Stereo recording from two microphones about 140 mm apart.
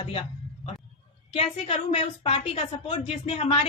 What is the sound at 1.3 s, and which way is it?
Speech, 45° left (ahead or behind).